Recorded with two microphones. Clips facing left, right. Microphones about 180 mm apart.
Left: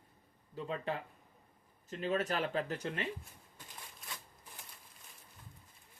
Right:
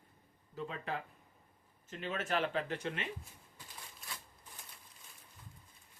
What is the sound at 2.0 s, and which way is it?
Speech, 40° left (ahead or behind).